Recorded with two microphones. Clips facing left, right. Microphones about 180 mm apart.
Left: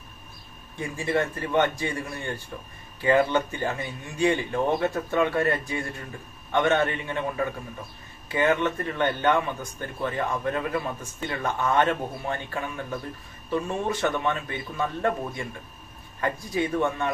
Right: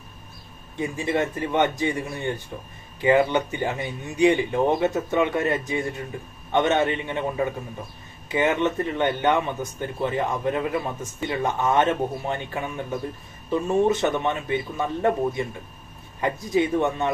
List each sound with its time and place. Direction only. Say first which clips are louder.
0.8 s speech: right 2 dB; 20° right (ahead or behind)